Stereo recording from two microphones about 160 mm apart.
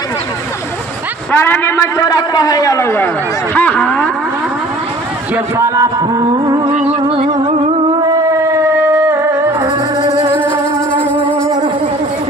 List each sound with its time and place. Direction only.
1.3 s a man's voice: 15° left (ahead or behind)
5.3 s speech: 20° right (ahead or behind)
6.9 s music: 35° right (ahead or behind)
8.0 s music: 20° right (ahead or behind)
10.0 s music: 35° right (ahead or behind)